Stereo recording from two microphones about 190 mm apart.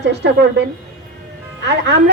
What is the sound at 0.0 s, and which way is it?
Speech, 65° right (ahead or behind).